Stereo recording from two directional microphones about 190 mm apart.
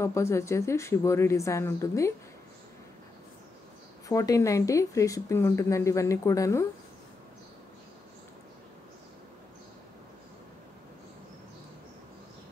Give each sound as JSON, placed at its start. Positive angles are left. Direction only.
{"t": 0.0, "sound": "speech", "side_deg": 15}
{"t": 4.1, "sound": "speech", "side_deg": 15}